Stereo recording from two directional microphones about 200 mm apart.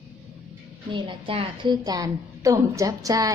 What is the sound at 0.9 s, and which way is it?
A woman's voice, 25° right (ahead or behind).